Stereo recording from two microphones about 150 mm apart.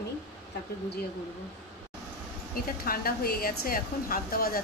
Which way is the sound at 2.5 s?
75° left (ahead or behind).